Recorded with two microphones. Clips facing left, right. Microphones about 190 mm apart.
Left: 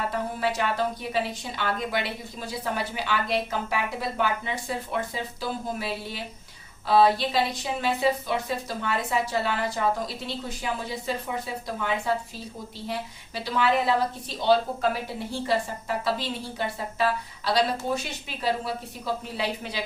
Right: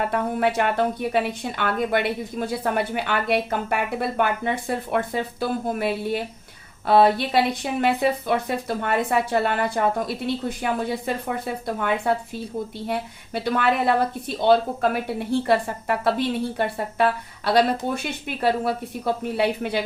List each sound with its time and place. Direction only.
0.1 s speech: 60° right (ahead or behind)